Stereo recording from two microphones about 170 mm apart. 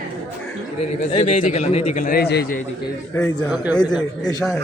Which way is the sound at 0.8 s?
40° left (ahead or behind).